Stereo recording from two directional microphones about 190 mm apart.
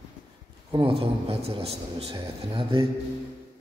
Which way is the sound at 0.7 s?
25° right (ahead or behind).